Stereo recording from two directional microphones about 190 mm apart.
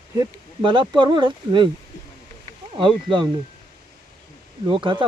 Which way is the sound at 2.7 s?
25° right (ahead or behind).